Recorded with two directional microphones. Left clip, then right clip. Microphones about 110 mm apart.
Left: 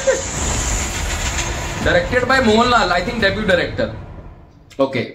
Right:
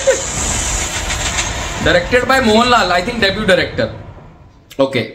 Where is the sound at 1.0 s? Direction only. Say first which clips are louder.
Right 4 dB; 40° right (ahead or behind).